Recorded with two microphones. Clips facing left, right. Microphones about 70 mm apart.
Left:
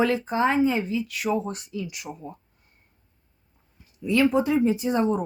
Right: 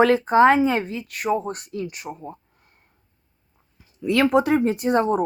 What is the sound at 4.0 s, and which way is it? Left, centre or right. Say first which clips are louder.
Speech: right 3 dB; right.